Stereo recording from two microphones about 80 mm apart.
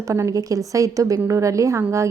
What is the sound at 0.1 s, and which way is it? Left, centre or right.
A woman's voice, right.